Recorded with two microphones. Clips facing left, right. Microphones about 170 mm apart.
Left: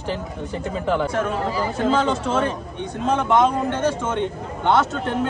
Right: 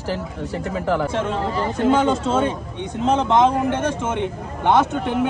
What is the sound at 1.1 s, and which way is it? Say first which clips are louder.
Speech: even; 25° right (ahead or behind).